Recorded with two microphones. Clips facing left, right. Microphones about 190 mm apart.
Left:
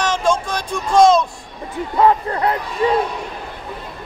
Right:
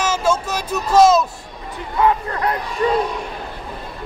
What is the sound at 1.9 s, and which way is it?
Speech, 35° left (ahead or behind).